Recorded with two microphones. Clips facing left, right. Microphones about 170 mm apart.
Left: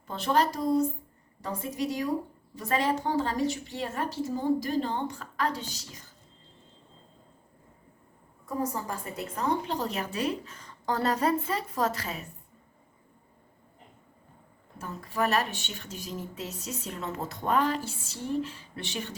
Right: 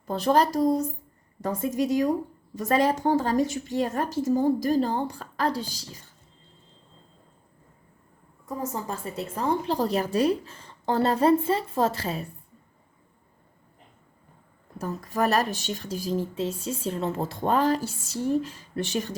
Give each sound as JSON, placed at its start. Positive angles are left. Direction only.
{"t": 0.1, "sound": "a woman's voice", "side_deg": -40}
{"t": 8.7, "sound": "a woman's voice", "side_deg": -25}
{"t": 14.8, "sound": "speech", "side_deg": -40}